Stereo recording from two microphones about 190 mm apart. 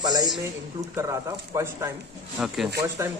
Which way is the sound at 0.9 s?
15° right (ahead or behind).